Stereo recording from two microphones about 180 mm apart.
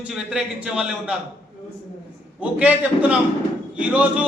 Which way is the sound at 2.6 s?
5° right (ahead or behind).